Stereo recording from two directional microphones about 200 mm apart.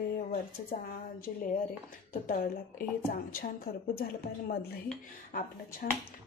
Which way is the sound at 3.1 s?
45° left (ahead or behind).